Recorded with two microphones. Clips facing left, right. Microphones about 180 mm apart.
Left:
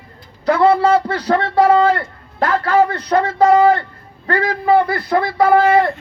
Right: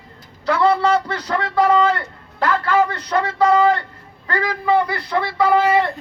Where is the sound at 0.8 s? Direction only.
30° left (ahead or behind).